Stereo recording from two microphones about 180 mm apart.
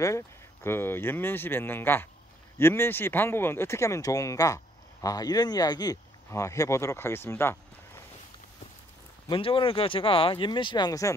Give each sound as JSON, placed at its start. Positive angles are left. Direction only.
{"t": 0.7, "sound": "speech", "side_deg": 10}
{"t": 9.3, "sound": "speech", "side_deg": 30}